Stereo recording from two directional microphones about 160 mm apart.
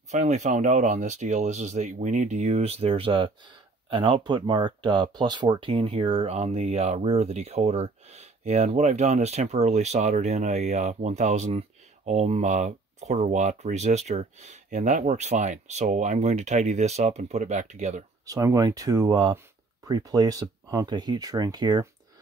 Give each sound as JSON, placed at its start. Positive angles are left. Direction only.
{"t": 0.1, "sound": "speech", "side_deg": -45}
{"t": 18.2, "sound": "speech", "side_deg": -20}